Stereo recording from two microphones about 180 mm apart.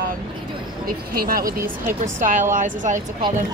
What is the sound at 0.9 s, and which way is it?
Speech, 55° right (ahead or behind).